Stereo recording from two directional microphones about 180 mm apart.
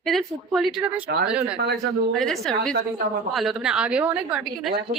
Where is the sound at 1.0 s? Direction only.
60° right (ahead or behind).